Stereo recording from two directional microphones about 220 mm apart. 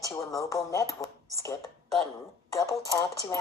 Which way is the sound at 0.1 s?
15° left (ahead or behind).